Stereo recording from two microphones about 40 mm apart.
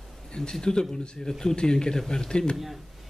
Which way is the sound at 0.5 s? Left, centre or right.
Centre.